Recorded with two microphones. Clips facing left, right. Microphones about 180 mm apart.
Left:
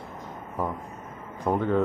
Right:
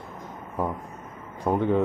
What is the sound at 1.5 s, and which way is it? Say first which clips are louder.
Speech: right 2 dB; 15° right (ahead or behind).